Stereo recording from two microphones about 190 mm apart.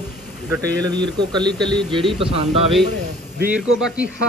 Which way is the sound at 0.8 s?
20° right (ahead or behind).